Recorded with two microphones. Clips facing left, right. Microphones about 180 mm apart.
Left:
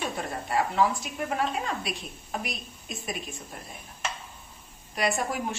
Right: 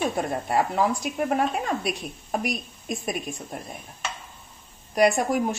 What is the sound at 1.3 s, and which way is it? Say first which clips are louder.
A woman's voice: right 3 dB; 50° right (ahead or behind).